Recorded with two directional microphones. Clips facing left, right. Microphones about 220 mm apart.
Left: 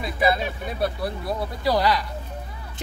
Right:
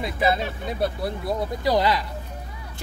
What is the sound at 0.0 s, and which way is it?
Speech, 20° right (ahead or behind).